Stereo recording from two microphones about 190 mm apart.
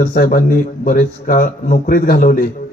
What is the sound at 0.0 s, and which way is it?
A man's voice, 50° left (ahead or behind).